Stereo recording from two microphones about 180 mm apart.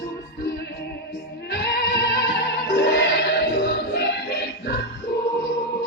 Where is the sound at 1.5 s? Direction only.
65° left (ahead or behind).